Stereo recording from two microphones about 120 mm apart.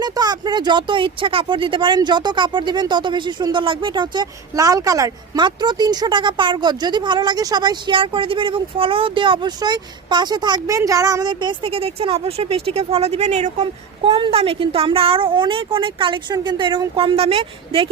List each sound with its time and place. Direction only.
0.0 s speech: 35° right (ahead or behind)
5.4 s speech: 40° right (ahead or behind); by 13.7 s 70° right (ahead or behind)
14.0 s a woman's voice: 50° right (ahead or behind)